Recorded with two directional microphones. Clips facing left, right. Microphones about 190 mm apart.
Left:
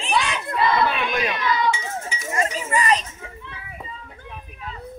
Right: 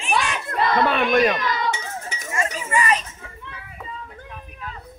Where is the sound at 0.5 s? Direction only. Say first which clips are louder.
Right 1 dB; 45° right (ahead or behind).